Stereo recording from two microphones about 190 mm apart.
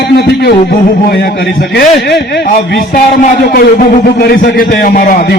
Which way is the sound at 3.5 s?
50° left (ahead or behind).